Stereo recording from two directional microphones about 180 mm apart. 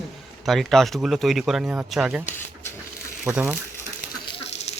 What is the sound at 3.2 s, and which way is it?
Speech, 5° right (ahead or behind).